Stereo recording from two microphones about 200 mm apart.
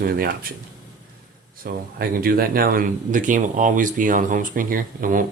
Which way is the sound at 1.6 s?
45° right (ahead or behind).